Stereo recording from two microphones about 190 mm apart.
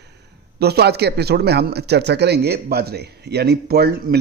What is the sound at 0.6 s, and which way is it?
Speech, 60° right (ahead or behind).